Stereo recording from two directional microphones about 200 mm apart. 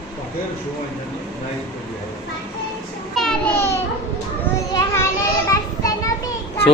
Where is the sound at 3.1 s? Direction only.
5° left (ahead or behind).